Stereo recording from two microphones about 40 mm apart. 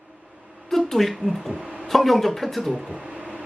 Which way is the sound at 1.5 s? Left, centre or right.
Right.